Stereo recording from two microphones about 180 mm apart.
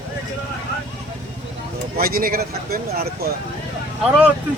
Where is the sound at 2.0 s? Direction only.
55° right (ahead or behind).